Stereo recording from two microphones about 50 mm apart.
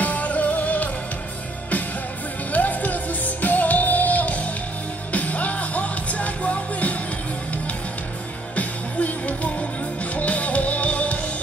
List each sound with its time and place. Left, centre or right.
0.0 s music: left
2.5 s music: left
8.5 s music: left